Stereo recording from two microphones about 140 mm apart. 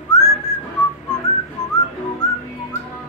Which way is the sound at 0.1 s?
25° left (ahead or behind).